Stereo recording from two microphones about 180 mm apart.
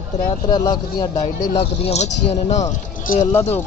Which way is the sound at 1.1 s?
35° left (ahead or behind).